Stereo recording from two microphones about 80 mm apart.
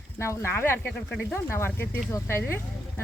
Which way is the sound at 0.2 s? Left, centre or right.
Left.